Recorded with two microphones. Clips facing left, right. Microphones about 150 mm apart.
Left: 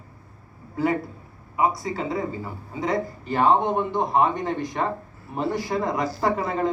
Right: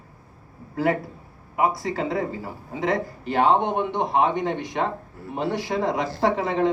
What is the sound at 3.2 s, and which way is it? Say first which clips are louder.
A man's voice: even; 70° right (ahead or behind).